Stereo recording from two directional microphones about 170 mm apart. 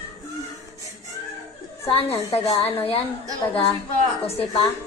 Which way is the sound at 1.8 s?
35° left (ahead or behind).